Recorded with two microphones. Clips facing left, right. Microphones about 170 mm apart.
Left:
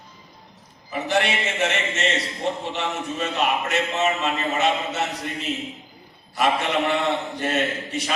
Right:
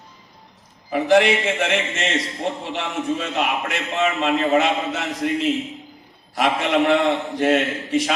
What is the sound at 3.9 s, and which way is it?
A man's voice, 90° right.